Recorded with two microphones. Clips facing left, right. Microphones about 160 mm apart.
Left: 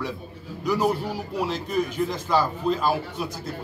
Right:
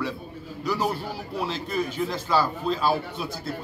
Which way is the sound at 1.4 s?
10° left (ahead or behind).